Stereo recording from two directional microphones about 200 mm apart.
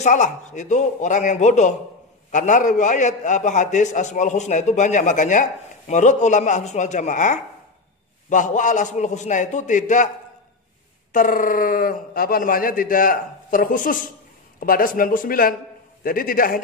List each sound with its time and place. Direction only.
0.0 s a man's voice: 35° left (ahead or behind)
11.1 s speech: 40° left (ahead or behind)